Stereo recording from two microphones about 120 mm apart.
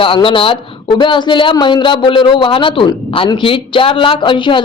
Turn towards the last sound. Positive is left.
turn(degrees=45)  # may be behind; listen again after turning